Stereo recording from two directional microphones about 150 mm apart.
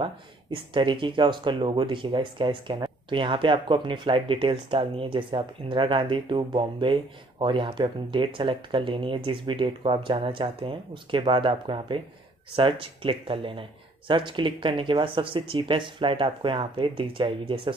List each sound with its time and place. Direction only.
0.0 s speech: 35° right (ahead or behind)